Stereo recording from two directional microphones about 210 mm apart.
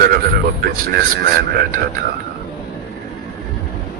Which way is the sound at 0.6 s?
45° right (ahead or behind).